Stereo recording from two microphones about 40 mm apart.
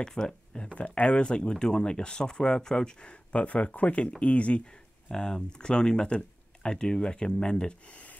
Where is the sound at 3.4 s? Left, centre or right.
Left.